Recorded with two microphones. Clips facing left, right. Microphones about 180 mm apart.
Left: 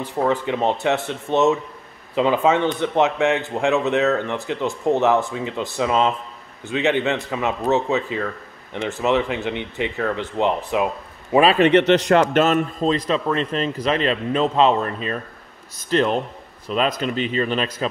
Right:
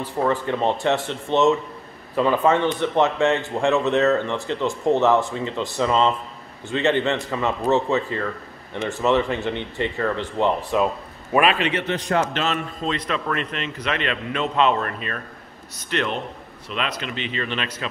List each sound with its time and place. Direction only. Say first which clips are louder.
0.0 s speech: left 1 dB; 15° left (ahead or behind)
8.7 s speech: even; 15° left (ahead or behind)
11.5 s a man's voice: left 10 dB; 50° left (ahead or behind)
11.8 s speech: left 7 dB; 85° left
12.4 s a man's voice: left 8 dB; 45° left (ahead or behind)
13.1 s a man's voice: left 5 dB; 30° left (ahead or behind)